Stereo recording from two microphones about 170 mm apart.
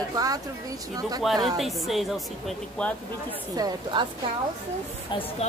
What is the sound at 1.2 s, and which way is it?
A woman's voice, centre (ahead or behind).